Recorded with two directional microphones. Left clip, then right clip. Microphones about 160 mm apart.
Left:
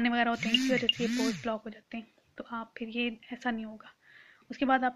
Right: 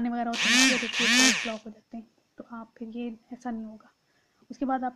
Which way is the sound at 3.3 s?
20° left (ahead or behind).